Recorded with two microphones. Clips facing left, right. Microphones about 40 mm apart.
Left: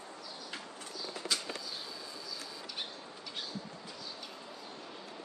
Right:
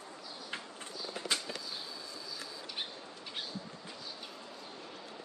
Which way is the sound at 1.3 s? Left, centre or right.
Right.